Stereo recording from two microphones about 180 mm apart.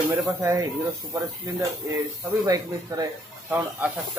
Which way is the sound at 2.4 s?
20° right (ahead or behind).